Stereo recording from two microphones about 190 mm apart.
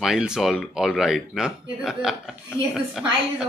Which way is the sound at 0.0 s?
5° right (ahead or behind).